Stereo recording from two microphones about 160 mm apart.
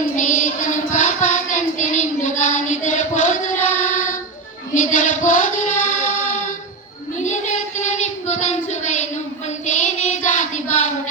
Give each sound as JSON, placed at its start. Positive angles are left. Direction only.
{"t": 0.2, "sound": "music", "side_deg": 50}
{"t": 3.8, "sound": "child singing", "side_deg": 50}
{"t": 7.2, "sound": "child singing", "side_deg": 50}